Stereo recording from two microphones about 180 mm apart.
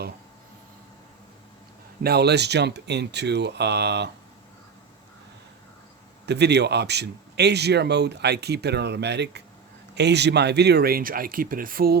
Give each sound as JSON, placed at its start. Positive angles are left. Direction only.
{"t": 2.0, "sound": "speech", "side_deg": -65}
{"t": 6.2, "sound": "speech", "side_deg": -70}